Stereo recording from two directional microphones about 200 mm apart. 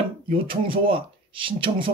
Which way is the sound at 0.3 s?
25° right (ahead or behind).